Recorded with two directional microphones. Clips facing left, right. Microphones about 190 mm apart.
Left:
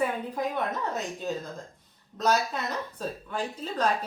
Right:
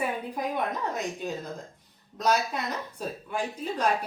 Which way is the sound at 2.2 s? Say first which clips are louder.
Even; 10° right (ahead or behind).